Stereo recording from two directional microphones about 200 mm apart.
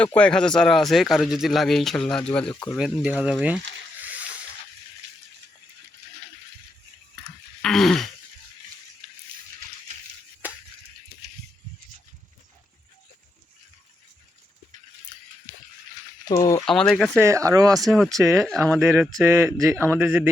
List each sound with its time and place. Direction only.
0.0 s speech: 5° left (ahead or behind)
7.3 s a sound: centre (ahead or behind)
16.2 s a sound: 15° left (ahead or behind)
16.6 s speech: centre (ahead or behind)
17.2 s speech: 15° right (ahead or behind)
17.8 s speech: centre (ahead or behind)